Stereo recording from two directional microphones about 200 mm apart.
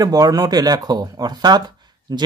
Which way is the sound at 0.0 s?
20° right (ahead or behind).